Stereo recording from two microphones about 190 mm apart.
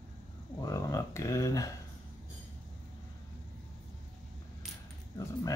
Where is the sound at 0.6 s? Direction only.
15° left (ahead or behind).